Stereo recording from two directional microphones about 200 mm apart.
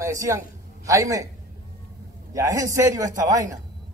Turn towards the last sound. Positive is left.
turn(degrees=-15)  # may be behind; listen again after turning